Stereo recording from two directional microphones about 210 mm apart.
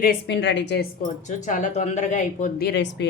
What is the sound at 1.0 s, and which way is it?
A woman's voice, 35° left (ahead or behind).